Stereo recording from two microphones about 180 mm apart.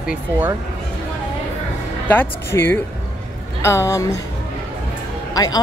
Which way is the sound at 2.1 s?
10° left (ahead or behind).